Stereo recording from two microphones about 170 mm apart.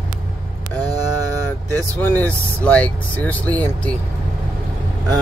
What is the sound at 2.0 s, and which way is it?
Speech, 10° left (ahead or behind).